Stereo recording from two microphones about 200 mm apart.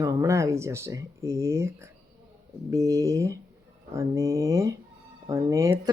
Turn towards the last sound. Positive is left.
turn(degrees=-15)  # may be behind; listen again after turning